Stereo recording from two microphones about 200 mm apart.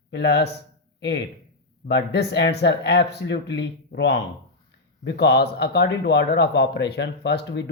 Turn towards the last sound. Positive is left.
turn(degrees=60)  # may be behind; listen again after turning